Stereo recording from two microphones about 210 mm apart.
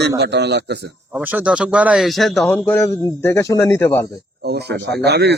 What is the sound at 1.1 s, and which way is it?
A man's voice, 5° right (ahead or behind).